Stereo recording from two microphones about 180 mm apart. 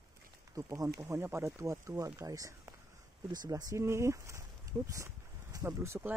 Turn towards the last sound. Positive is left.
turn(degrees=-15)  # may be behind; listen again after turning